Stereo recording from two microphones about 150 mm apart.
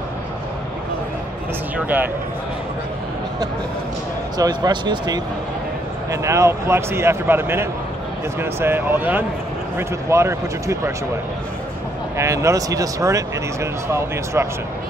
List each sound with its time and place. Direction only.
4.4 s speech: 25° right (ahead or behind)
6.2 s speech: 20° right (ahead or behind)
12.2 s speech: 20° right (ahead or behind)